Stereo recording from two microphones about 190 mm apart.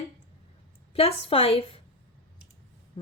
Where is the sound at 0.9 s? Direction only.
30° left (ahead or behind).